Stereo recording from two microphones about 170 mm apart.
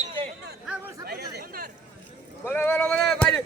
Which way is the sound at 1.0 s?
65° right (ahead or behind).